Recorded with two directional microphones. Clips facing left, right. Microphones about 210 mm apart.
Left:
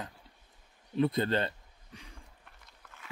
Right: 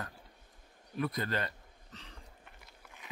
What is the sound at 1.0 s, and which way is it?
Speech, 25° left (ahead or behind).